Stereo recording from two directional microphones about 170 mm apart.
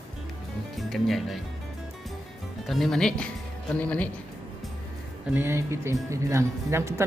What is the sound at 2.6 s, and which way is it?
Speech, centre (ahead or behind).